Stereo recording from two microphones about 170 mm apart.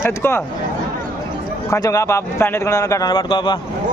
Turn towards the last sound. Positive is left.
turn(degrees=30)  # may be behind; listen again after turning